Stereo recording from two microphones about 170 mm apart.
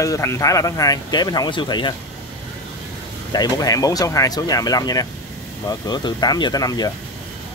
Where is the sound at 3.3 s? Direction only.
25° left (ahead or behind).